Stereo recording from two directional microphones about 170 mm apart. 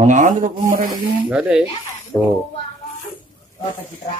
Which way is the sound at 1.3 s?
5° right (ahead or behind).